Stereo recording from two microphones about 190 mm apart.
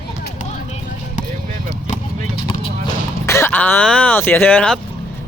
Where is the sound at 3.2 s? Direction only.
15° left (ahead or behind).